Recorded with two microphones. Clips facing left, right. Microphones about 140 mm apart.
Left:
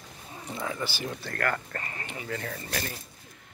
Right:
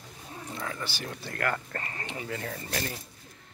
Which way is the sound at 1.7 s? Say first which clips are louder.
Right 1 dB; 35° right (ahead or behind).